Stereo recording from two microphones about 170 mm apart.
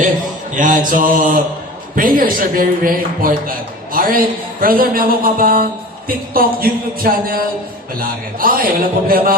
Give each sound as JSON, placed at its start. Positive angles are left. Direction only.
{"t": 0.5, "sound": "mantra", "side_deg": -50}
{"t": 2.0, "sound": "a man's voice", "side_deg": -55}